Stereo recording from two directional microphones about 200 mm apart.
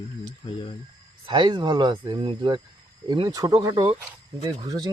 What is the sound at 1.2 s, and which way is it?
Speech, 25° right (ahead or behind).